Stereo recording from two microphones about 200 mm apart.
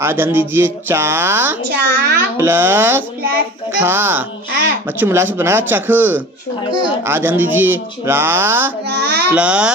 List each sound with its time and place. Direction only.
0.0 s speech: 10° right (ahead or behind)
1.8 s a child's voice: 50° right (ahead or behind)
2.3 s speech: 10° right (ahead or behind)
8.9 s a sound: 55° right (ahead or behind)
9.3 s speech: 5° right (ahead or behind)